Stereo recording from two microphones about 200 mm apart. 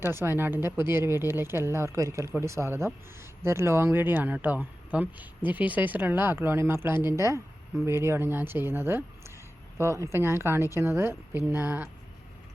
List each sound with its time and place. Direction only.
0.0 s speech: 10° right (ahead or behind)